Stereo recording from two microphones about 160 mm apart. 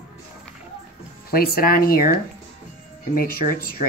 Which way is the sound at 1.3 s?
70° left (ahead or behind).